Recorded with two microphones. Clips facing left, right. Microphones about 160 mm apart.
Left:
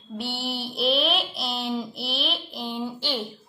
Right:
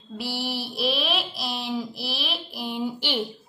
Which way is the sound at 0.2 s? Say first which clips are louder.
Right 1 dB; 5° right (ahead or behind).